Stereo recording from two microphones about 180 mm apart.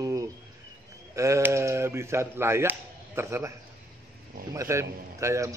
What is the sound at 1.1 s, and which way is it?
Speech, 15° right (ahead or behind).